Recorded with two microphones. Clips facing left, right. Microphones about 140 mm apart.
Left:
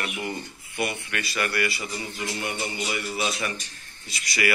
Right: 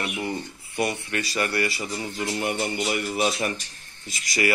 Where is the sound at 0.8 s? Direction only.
35° right (ahead or behind).